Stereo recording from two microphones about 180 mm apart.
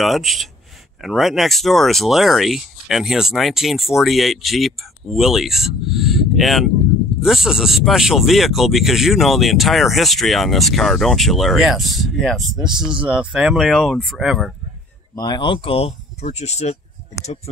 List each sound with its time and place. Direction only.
0.0 s speech: centre (ahead or behind)
15.1 s speech: 20° left (ahead or behind)